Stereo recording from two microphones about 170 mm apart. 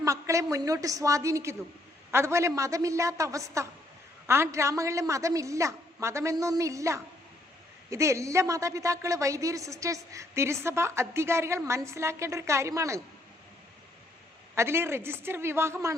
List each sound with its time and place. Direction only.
0.0 s a sound: 20° right (ahead or behind)
0.5 s a woman's voice: 20° right (ahead or behind)
14.5 s a woman's voice: 15° right (ahead or behind)